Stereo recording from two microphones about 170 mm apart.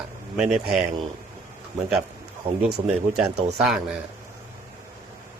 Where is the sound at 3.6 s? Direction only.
5° right (ahead or behind).